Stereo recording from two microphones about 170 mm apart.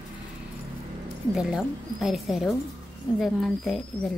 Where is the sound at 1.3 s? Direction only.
5° right (ahead or behind).